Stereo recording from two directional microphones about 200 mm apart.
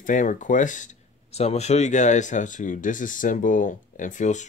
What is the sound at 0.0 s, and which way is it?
Speech, 40° left (ahead or behind).